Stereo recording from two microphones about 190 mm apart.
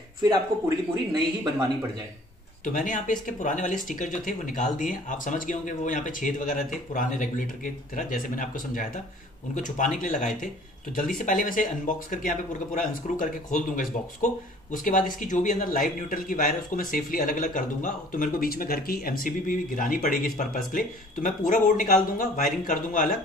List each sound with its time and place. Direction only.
0.2 s speech: 20° right (ahead or behind)
2.6 s speech: 45° left (ahead or behind)